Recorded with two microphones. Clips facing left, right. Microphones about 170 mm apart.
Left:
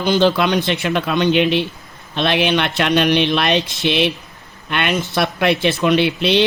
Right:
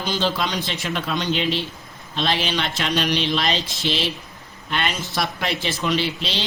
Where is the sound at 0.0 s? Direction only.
60° left (ahead or behind).